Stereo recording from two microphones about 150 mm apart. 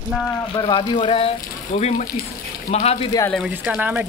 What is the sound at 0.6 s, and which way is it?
Speech, 30° left (ahead or behind).